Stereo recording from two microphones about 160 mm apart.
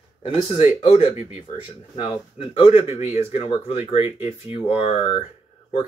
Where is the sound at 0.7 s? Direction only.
40° left (ahead or behind).